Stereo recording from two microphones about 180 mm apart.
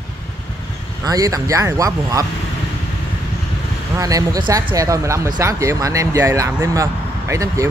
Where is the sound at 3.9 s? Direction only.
20° right (ahead or behind).